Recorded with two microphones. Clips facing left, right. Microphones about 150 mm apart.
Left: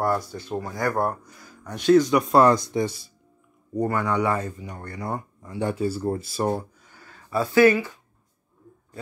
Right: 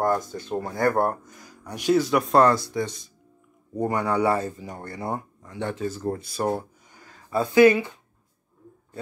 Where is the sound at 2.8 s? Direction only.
5° left (ahead or behind).